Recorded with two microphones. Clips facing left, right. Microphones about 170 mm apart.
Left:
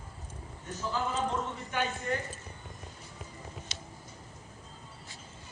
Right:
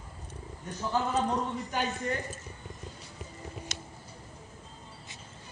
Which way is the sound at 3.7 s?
45° right (ahead or behind).